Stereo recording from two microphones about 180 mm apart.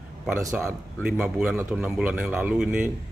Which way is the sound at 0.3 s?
15° right (ahead or behind).